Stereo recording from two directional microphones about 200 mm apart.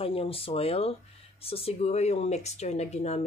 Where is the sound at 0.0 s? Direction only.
30° left (ahead or behind).